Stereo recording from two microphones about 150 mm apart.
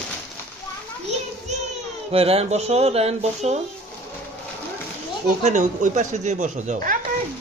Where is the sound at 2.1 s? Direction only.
40° right (ahead or behind).